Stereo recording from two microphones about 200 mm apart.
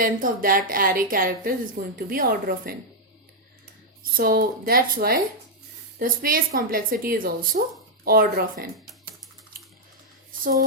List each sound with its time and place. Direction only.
0.0 s a woman's voice: 45° right (ahead or behind)
4.0 s a woman's voice: 45° right (ahead or behind)